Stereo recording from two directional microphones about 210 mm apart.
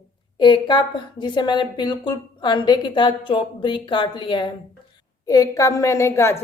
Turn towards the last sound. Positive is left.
turn(degrees=15)  # may be behind; listen again after turning